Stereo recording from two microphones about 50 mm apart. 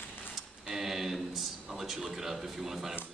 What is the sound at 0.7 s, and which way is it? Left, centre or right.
A man's voice, centre.